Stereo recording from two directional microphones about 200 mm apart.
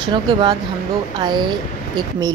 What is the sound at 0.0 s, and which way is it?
Speech, 20° right (ahead or behind).